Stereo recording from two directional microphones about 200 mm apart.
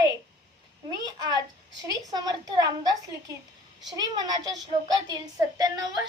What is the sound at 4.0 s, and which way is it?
A woman's voice, 20° right (ahead or behind).